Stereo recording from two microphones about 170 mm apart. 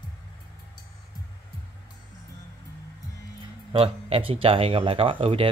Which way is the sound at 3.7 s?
35° right (ahead or behind).